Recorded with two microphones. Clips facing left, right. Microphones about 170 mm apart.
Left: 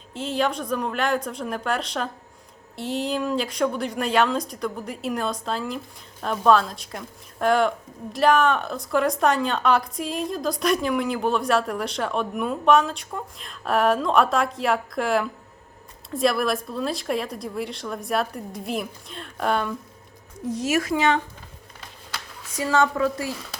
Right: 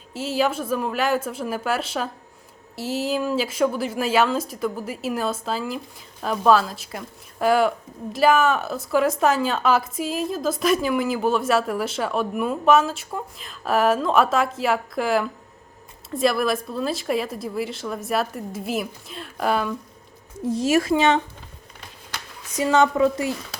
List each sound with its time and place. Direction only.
0.1 s a woman's voice: 5° right (ahead or behind)
20.4 s speech: 30° right (ahead or behind)
22.5 s speech: 20° right (ahead or behind)